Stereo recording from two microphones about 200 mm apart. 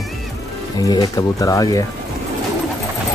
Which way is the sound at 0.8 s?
20° left (ahead or behind).